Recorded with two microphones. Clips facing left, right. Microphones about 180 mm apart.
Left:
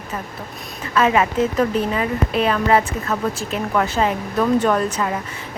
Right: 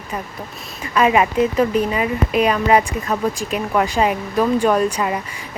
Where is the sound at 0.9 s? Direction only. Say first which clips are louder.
Right 2 dB; 15° right (ahead or behind).